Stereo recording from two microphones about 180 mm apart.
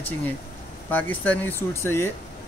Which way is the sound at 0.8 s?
10° left (ahead or behind).